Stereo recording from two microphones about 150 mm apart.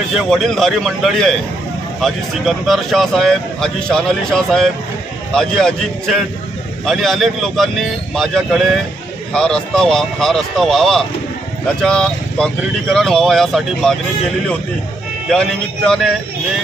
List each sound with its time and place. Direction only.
0.1 s speech: centre (ahead or behind)
15.2 s speech: 5° left (ahead or behind)